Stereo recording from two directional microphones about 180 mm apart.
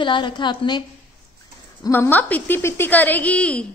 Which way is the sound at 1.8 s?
15° left (ahead or behind).